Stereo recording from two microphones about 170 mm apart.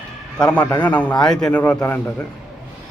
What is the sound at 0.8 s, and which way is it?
Speech, 10° left (ahead or behind).